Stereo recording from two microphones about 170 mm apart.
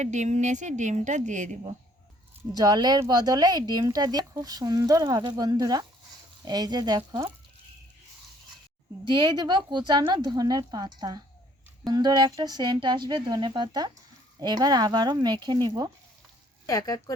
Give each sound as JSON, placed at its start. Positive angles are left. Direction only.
{"t": 0.0, "sound": "speech", "side_deg": -45}
{"t": 2.5, "sound": "speech", "side_deg": -25}
{"t": 9.0, "sound": "speech", "side_deg": -25}
{"t": 16.6, "sound": "speech", "side_deg": 20}